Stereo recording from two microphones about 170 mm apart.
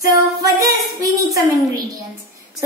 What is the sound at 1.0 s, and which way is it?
Speech, 20° right (ahead or behind).